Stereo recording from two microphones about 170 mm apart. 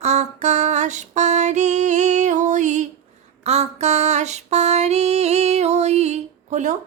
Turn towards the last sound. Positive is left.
turn(degrees=-45)  # may be behind; listen again after turning